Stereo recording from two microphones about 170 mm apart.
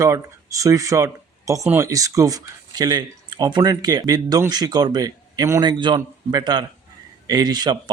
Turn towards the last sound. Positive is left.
turn(degrees=-25)  # may be behind; listen again after turning